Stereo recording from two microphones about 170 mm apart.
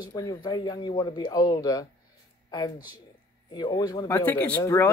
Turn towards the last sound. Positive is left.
turn(degrees=15)  # may be behind; listen again after turning